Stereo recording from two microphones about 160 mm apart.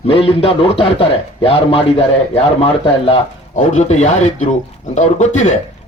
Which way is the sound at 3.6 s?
45° left (ahead or behind).